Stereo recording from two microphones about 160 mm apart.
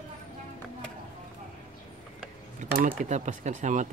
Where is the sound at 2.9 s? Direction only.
45° right (ahead or behind).